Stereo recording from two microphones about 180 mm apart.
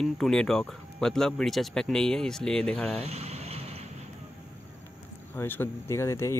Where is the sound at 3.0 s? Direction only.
35° right (ahead or behind).